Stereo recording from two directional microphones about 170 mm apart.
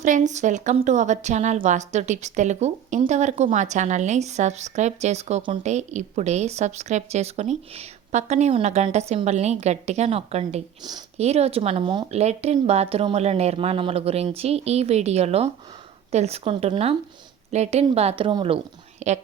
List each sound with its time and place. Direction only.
0.0 s a woman's voice: 45° right (ahead or behind)